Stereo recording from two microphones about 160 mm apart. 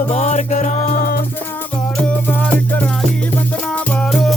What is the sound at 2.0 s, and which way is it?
Music, 10° left (ahead or behind).